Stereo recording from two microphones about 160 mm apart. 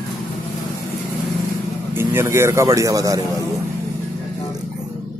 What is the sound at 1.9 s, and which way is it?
Speech, 15° right (ahead or behind).